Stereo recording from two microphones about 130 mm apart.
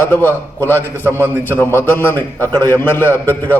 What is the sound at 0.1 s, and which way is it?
A man's voice, 15° left (ahead or behind).